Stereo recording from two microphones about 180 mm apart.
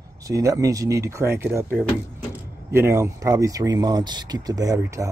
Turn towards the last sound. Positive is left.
turn(degrees=-15)  # may be behind; listen again after turning